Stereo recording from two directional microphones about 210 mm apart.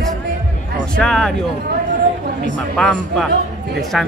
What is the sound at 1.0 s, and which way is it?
Speech, 5° left (ahead or behind).